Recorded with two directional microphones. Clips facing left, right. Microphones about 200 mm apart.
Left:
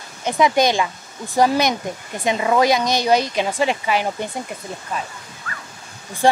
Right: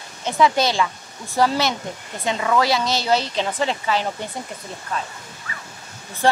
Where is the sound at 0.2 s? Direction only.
15° left (ahead or behind).